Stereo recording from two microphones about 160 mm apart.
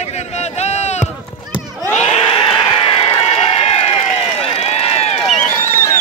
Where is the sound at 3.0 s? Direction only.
40° left (ahead or behind).